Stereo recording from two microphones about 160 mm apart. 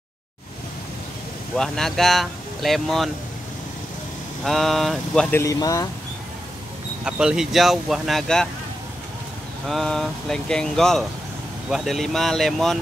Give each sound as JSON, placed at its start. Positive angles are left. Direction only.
{"t": 1.6, "sound": "speech", "side_deg": 5}
{"t": 4.5, "sound": "speech", "side_deg": 0}
{"t": 5.4, "sound": "speech", "side_deg": 20}
{"t": 7.1, "sound": "speech", "side_deg": -5}
{"t": 9.7, "sound": "speech", "side_deg": 0}